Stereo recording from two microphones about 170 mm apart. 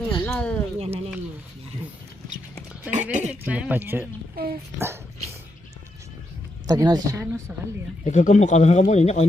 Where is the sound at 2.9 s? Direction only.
45° right (ahead or behind).